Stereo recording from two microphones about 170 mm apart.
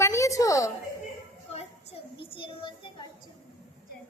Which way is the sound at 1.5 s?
35° left (ahead or behind).